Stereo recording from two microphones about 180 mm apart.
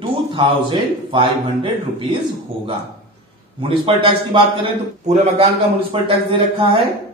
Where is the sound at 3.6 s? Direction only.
30° right (ahead or behind).